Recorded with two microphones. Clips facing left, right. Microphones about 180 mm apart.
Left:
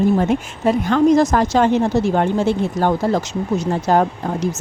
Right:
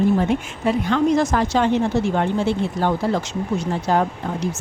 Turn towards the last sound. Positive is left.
turn(degrees=45)  # may be behind; listen again after turning